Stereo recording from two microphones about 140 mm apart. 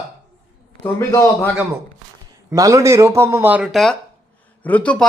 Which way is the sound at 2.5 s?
25° right (ahead or behind).